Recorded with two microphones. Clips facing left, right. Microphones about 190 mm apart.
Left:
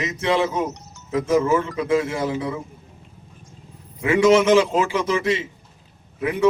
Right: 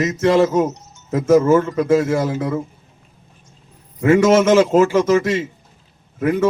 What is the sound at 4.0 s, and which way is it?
Speech, 45° right (ahead or behind).